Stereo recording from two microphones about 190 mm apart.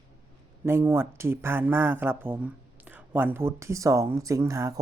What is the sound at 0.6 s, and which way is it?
Speech, 10° right (ahead or behind).